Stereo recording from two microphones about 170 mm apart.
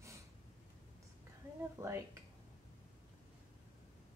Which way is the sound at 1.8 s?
15° right (ahead or behind).